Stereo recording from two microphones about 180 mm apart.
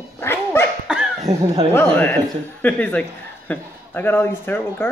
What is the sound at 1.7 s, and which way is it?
A man's voice, 10° left (ahead or behind).